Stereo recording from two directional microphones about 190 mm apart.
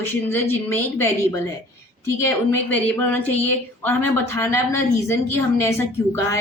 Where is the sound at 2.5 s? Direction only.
10° left (ahead or behind).